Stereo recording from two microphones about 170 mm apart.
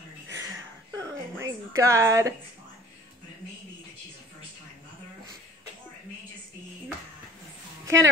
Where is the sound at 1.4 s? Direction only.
15° right (ahead or behind).